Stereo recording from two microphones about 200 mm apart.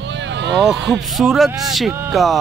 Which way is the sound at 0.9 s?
Centre (ahead or behind).